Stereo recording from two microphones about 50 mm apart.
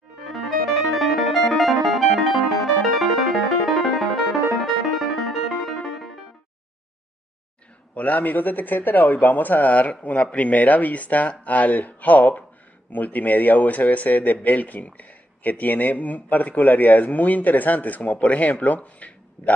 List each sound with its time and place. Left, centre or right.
0.9 s music: centre
7.9 s speech: left